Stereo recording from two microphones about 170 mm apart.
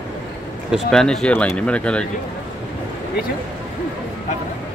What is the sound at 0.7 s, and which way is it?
Speech, centre (ahead or behind).